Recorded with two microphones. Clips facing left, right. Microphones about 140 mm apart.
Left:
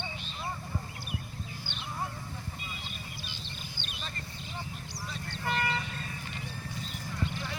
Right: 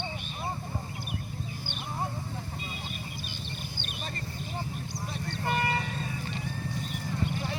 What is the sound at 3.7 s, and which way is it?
Vehicle, 50° right (ahead or behind).